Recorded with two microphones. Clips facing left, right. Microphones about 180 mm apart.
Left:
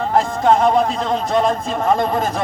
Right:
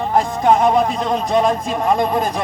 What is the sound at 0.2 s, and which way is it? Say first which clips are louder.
A man's voice: even; centre (ahead or behind).